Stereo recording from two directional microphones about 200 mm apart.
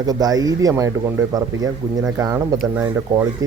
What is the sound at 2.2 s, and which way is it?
Speech, 15° right (ahead or behind).